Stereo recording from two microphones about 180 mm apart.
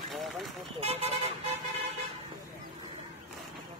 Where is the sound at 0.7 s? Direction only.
35° right (ahead or behind).